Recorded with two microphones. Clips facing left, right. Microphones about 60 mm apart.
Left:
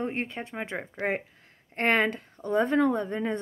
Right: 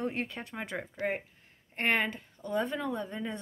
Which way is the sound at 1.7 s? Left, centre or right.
Left.